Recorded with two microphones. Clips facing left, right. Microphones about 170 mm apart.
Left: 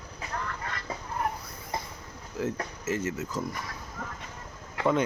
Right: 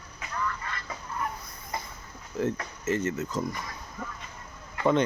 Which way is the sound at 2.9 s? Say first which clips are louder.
Right 3 dB; 5° left (ahead or behind).